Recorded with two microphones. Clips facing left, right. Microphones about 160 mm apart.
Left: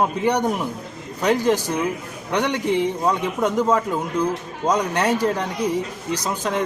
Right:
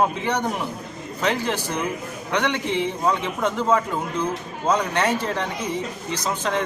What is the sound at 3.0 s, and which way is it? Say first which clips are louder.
A man's voice: left 2 dB; 10° left (ahead or behind).